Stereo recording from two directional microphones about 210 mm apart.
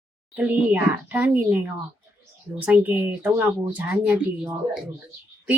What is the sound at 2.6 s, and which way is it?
Speech, 10° right (ahead or behind).